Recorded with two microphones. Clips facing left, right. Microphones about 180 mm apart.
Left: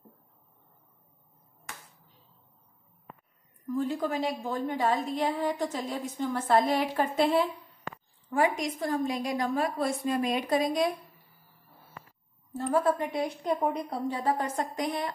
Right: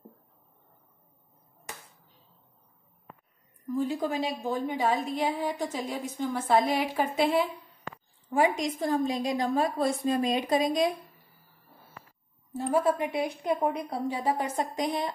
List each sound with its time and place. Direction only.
3.7 s a woman's voice: 15° right (ahead or behind)
8.3 s a woman's voice: 20° right (ahead or behind)
12.7 s a woman's voice: 15° right (ahead or behind)